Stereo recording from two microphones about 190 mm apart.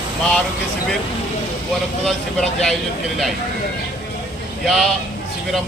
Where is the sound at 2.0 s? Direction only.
Centre (ahead or behind).